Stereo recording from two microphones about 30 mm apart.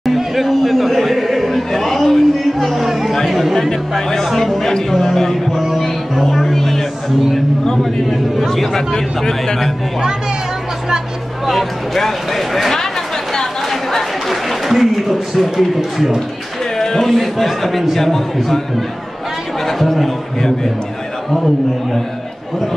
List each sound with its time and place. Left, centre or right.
0.0 s chatter: centre
3.5 s a sound: centre
4.6 s music: centre
7.8 s a sound: centre
8.9 s speech: centre
11.5 s speech: centre
13.3 s chatter: centre
14.3 s applause: centre
15.1 s a man's voice: centre
16.7 s speech: centre
19.6 s speech: centre